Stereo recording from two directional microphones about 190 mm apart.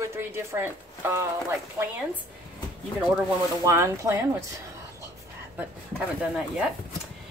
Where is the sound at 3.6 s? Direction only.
15° right (ahead or behind).